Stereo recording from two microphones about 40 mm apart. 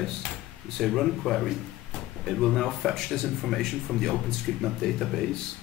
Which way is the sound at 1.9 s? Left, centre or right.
Centre.